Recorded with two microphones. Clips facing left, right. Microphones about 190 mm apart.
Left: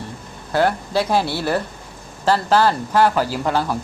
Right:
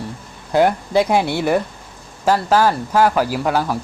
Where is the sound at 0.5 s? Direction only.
15° right (ahead or behind).